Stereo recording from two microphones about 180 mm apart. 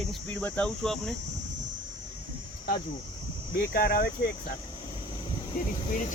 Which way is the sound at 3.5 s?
55° left (ahead or behind).